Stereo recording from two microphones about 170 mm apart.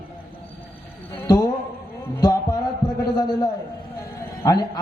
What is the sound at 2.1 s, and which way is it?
Music, 20° left (ahead or behind).